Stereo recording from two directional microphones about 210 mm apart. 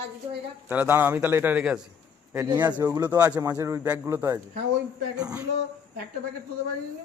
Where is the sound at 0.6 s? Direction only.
10° right (ahead or behind).